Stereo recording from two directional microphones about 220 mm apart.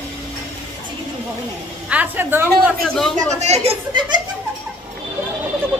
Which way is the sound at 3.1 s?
30° right (ahead or behind).